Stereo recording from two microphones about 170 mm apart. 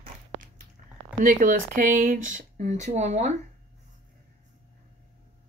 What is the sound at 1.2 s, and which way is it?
Speech, 50° right (ahead or behind).